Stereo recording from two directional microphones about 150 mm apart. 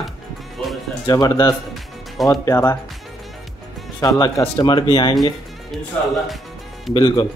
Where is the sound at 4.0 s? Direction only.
25° left (ahead or behind).